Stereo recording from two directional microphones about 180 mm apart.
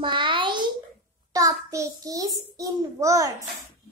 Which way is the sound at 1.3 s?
15° right (ahead or behind).